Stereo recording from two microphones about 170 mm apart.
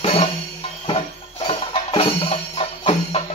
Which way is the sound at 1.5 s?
30° left (ahead or behind).